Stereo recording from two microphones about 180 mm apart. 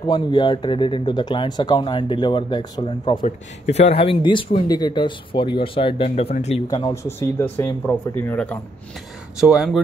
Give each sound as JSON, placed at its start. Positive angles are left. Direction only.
{"t": 0.0, "sound": "speech", "side_deg": 25}
{"t": 3.3, "sound": "speech", "side_deg": 35}
{"t": 6.7, "sound": "speech", "side_deg": 20}
{"t": 9.4, "sound": "speech", "side_deg": -5}